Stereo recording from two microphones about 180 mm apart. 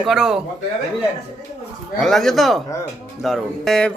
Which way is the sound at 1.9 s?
Centre (ahead or behind).